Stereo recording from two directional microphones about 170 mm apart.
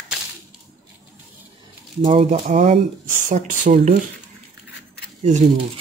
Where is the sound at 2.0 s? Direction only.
35° right (ahead or behind).